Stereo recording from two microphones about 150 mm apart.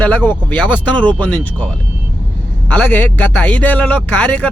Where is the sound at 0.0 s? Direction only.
10° left (ahead or behind).